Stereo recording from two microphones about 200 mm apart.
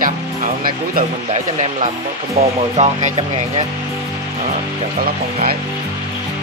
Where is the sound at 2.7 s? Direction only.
35° right (ahead or behind).